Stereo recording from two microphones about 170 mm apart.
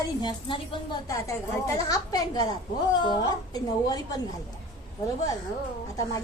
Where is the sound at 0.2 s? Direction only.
25° left (ahead or behind).